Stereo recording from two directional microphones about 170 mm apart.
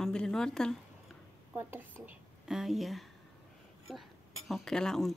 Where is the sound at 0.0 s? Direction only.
5° left (ahead or behind).